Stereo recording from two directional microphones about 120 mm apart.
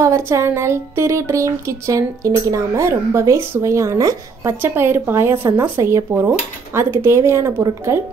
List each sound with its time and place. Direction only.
0.0 s speech: 20° right (ahead or behind)